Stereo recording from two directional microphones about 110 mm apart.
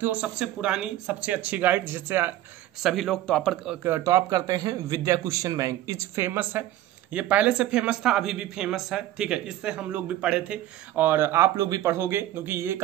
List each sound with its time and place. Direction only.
0.0 s speech: 10° right (ahead or behind)
2.8 s a man's voice: centre (ahead or behind)
3.8 s a man's voice: 25° right (ahead or behind)